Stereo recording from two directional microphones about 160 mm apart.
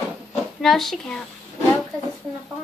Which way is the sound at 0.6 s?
Centre (ahead or behind).